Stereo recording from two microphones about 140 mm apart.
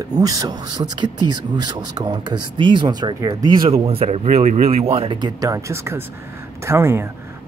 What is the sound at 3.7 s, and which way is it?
Speech, 45° right (ahead or behind).